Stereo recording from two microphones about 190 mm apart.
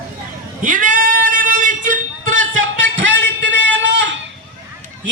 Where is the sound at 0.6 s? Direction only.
45° right (ahead or behind).